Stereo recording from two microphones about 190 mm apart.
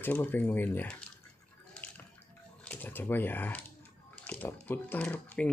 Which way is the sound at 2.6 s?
10° left (ahead or behind).